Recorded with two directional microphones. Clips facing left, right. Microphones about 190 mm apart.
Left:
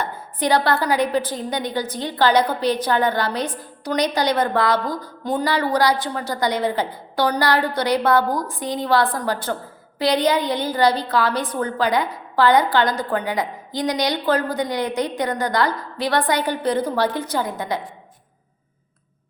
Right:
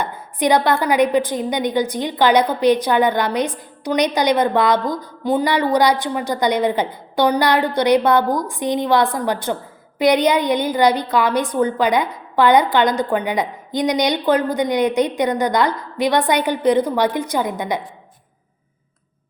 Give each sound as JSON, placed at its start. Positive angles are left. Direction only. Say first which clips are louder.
{"t": 0.0, "sound": "a woman's voice", "louder": "right 4 dB", "side_deg": -15}